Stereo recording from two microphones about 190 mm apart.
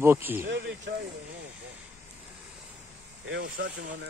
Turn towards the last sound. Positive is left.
turn(degrees=-65)  # may be behind; listen again after turning